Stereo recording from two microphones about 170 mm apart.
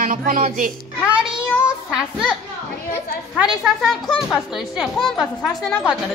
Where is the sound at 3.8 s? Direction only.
Centre (ahead or behind).